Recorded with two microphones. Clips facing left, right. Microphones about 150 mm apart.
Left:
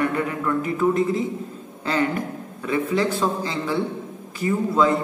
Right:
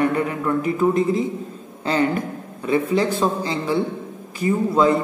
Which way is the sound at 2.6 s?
20° right (ahead or behind).